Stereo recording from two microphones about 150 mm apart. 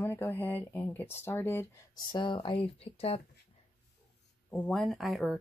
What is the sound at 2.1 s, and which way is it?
Speech, 30° left (ahead or behind).